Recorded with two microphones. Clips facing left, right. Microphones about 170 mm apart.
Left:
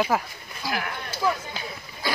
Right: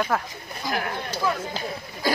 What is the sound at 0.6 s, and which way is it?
Speech, 45° right (ahead or behind).